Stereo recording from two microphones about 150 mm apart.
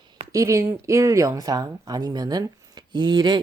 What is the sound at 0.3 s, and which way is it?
Speech, 20° right (ahead or behind).